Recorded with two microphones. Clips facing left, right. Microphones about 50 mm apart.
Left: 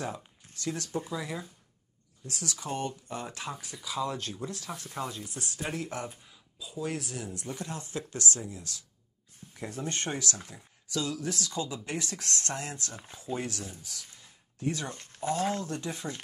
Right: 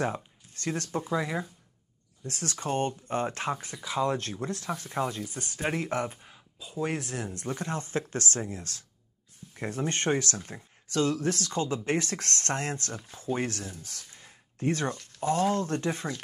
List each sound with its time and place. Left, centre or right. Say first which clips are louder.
0.6 s speech: right 2 dB; right
4.6 s speech: right 8 dB; right
5.6 s speech: right 6 dB; right
12.9 s speech: right 4 dB; left
13.2 s speech: right 4 dB; right